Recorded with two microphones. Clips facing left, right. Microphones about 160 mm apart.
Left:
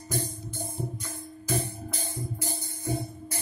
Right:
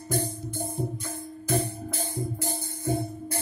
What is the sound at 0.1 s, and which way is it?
Music, 55° right (ahead or behind).